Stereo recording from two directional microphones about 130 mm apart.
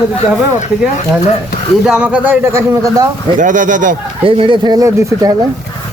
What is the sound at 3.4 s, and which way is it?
Speech, 80° right.